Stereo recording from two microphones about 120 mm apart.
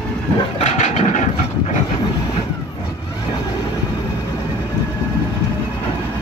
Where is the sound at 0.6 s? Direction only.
70° left (ahead or behind).